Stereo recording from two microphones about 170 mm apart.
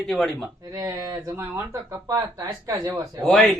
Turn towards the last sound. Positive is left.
turn(degrees=0)  # may be behind; listen again after turning